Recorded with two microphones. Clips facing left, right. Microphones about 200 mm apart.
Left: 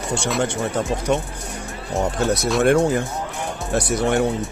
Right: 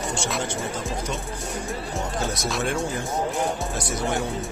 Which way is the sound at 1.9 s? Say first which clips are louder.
Left 10 dB; 65° left (ahead or behind).